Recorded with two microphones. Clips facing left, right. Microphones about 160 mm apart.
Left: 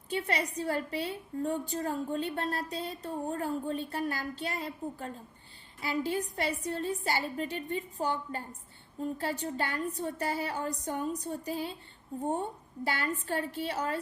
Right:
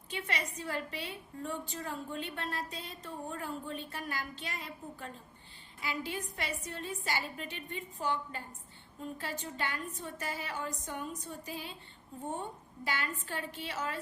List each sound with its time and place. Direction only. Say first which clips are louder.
0.1 s a woman's voice: left 6 dB; 35° left (ahead or behind)
12.8 s a woman's voice: left 5 dB; 35° left (ahead or behind)